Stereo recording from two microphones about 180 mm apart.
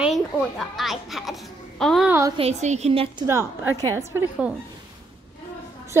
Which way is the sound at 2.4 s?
40° right (ahead or behind).